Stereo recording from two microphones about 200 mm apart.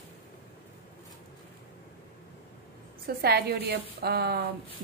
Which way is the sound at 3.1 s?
50° right (ahead or behind).